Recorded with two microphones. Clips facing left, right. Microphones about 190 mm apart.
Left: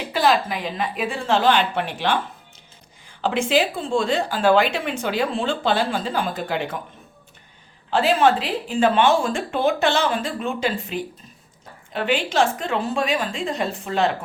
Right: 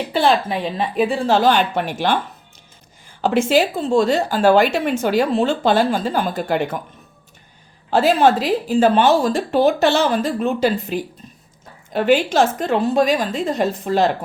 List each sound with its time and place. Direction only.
0.1 s speech: 30° right (ahead or behind); by 2.1 s 45° right (ahead or behind)
3.2 s speech: 45° right (ahead or behind)
7.9 s speech: 40° right (ahead or behind)